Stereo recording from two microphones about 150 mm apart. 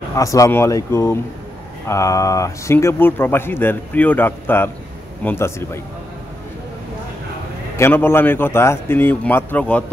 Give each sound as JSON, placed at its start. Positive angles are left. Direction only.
{"t": 0.1, "sound": "speech", "side_deg": 20}
{"t": 7.7, "sound": "speech", "side_deg": 15}